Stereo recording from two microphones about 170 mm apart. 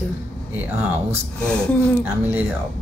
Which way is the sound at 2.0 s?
10° right (ahead or behind).